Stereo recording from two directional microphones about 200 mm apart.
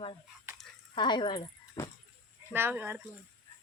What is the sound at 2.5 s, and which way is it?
Speech, 10° right (ahead or behind).